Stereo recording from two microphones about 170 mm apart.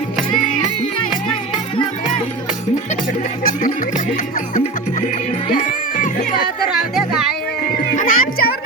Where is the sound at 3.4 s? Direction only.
50° left (ahead or behind).